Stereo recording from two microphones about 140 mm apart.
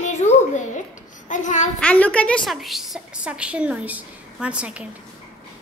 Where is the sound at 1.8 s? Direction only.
10° left (ahead or behind); by 4.8 s 10° right (ahead or behind).